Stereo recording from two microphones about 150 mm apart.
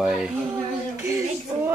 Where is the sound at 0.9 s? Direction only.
20° right (ahead or behind).